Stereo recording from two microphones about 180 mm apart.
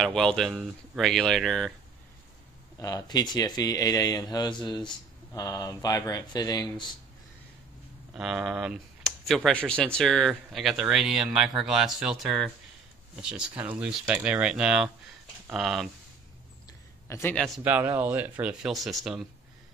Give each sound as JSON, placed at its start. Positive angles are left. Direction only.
{"t": 0.0, "sound": "speech", "side_deg": 5}
{"t": 2.8, "sound": "speech", "side_deg": 20}
{"t": 8.1, "sound": "speech", "side_deg": 0}
{"t": 17.1, "sound": "a man's voice", "side_deg": 10}
{"t": 17.6, "sound": "speech", "side_deg": -10}